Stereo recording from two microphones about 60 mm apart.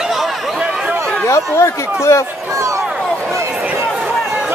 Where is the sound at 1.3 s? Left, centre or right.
Left.